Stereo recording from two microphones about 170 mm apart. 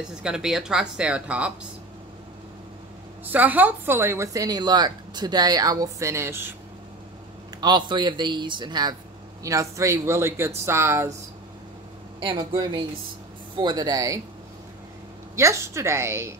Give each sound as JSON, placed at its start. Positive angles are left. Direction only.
{"t": 0.2, "sound": "speech", "side_deg": -5}
{"t": 3.3, "sound": "a woman's voice", "side_deg": -10}
{"t": 7.6, "sound": "a man's voice", "side_deg": -25}
{"t": 12.2, "sound": "a man's voice", "side_deg": -25}
{"t": 15.3, "sound": "a woman's voice", "side_deg": -15}